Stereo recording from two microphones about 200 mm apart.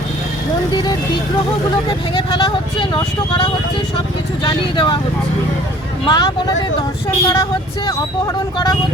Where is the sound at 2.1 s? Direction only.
20° left (ahead or behind).